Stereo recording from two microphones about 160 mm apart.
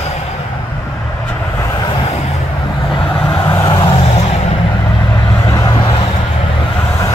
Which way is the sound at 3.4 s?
20° left (ahead or behind).